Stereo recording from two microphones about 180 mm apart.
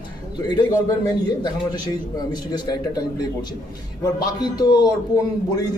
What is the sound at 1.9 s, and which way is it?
A man's voice, 20° left (ahead or behind).